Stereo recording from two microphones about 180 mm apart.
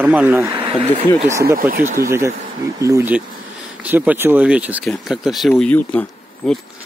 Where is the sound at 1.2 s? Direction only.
15° right (ahead or behind).